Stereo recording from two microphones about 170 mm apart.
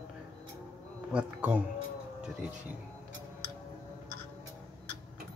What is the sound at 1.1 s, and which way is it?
Speech, 10° right (ahead or behind).